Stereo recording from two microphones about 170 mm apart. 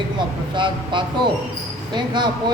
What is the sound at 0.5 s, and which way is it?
Speech, 30° right (ahead or behind).